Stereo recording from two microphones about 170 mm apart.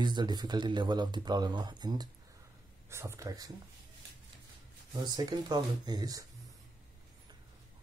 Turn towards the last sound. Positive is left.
turn(degrees=-20)  # may be behind; listen again after turning